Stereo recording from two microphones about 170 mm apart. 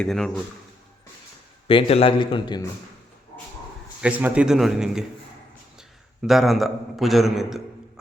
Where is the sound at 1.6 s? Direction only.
35° left (ahead or behind).